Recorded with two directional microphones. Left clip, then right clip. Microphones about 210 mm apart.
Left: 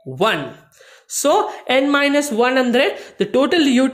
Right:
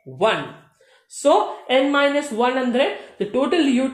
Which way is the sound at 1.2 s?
40° left (ahead or behind).